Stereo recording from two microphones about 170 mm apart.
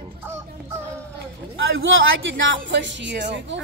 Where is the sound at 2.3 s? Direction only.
90° right.